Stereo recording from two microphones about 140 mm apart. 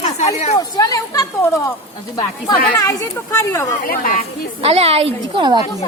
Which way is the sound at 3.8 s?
90° left.